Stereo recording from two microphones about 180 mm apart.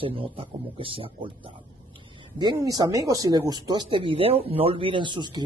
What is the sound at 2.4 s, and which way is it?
A woman's voice, 20° right (ahead or behind).